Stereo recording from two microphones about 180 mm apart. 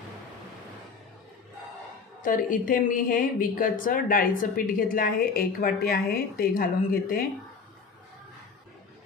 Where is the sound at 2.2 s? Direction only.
50° left (ahead or behind).